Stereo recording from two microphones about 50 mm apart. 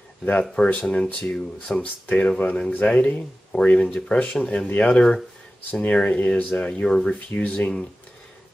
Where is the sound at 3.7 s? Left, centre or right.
Centre.